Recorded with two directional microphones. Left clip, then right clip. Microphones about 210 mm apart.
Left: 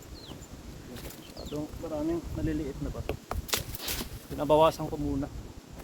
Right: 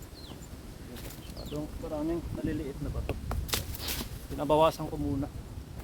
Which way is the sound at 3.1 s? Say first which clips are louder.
Left 2 dB; 20° left (ahead or behind).